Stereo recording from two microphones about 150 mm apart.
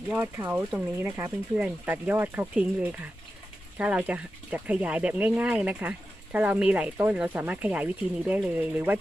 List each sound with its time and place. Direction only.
0.1 s speech: 15° right (ahead or behind)
1.5 s speech: 10° right (ahead or behind)